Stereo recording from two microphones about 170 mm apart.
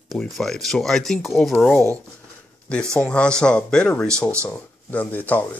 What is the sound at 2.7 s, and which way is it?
Speech, 5° left (ahead or behind).